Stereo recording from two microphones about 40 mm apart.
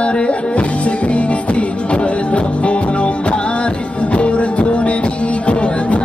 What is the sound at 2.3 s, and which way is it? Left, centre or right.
Music, left.